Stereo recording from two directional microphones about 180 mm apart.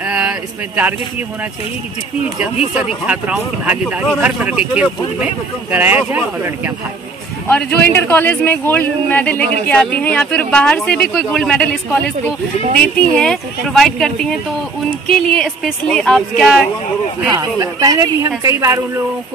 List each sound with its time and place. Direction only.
0.0 s a sound: 5° right (ahead or behind)
3.1 s speech: 10° right (ahead or behind)
7.4 s a man's voice: 10° left (ahead or behind)
13.1 s speech: 5° left (ahead or behind)
17.3 s speech: 20° right (ahead or behind)